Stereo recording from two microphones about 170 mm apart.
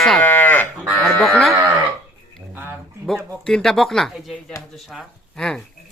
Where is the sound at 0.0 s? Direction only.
5° left (ahead or behind).